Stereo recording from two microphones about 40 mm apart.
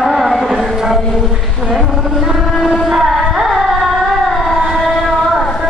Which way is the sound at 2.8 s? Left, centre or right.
Centre.